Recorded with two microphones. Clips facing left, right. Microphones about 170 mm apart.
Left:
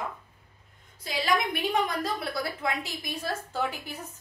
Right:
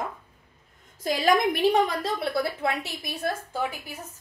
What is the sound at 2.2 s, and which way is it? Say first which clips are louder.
Speech: right 5 dB; 25° right (ahead or behind).